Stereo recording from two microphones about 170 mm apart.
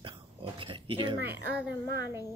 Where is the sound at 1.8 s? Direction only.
75° right (ahead or behind).